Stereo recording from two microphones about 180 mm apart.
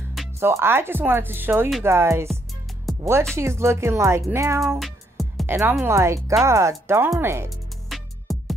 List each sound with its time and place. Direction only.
0.4 s speech: 15° right (ahead or behind)
4.7 s music: centre (ahead or behind)
5.5 s speech: 10° right (ahead or behind)
7.4 s music: centre (ahead or behind)